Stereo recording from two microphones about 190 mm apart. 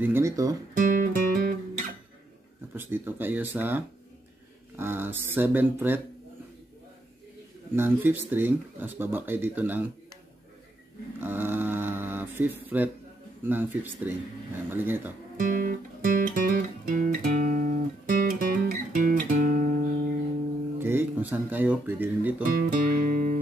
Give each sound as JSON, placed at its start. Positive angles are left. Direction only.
{"t": 0.0, "sound": "speech", "side_deg": -15}
{"t": 0.7, "sound": "guitar", "side_deg": -45}
{"t": 2.7, "sound": "speech", "side_deg": -10}
{"t": 7.7, "sound": "speech", "side_deg": -10}
{"t": 11.1, "sound": "a sound", "side_deg": -10}
{"t": 13.4, "sound": "speech", "side_deg": -10}
{"t": 15.3, "sound": "music", "side_deg": -45}
{"t": 20.8, "sound": "speech", "side_deg": -10}
{"t": 22.7, "sound": "music", "side_deg": -45}